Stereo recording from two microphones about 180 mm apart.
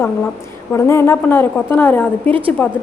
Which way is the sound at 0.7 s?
15° left (ahead or behind).